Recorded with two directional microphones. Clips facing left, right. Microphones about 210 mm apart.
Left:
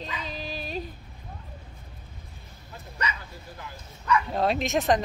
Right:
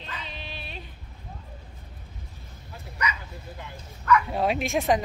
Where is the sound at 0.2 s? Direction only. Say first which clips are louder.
Left 5 dB; 40° left (ahead or behind).